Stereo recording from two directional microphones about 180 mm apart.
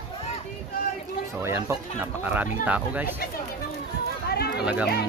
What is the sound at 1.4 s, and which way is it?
Speech, 15° right (ahead or behind).